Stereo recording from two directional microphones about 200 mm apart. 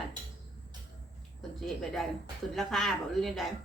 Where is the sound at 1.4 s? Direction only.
Centre (ahead or behind).